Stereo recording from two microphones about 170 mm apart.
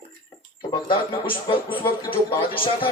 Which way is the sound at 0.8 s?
30° left (ahead or behind).